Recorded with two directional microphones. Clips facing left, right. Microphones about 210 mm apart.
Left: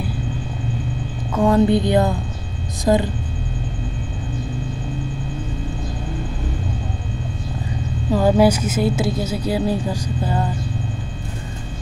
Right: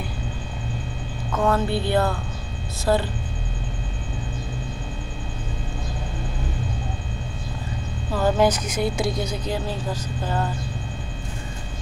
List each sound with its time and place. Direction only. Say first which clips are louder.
1.3 s a woman's voice: left 7 dB; 15° left (ahead or behind)
8.1 s a woman's voice: left 5 dB; 15° left (ahead or behind)